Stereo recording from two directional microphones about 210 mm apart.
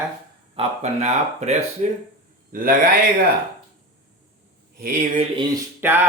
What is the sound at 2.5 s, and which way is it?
Speech, 40° right (ahead or behind).